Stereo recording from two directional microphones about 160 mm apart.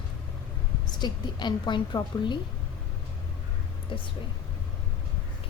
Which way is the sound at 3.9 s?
30° left (ahead or behind).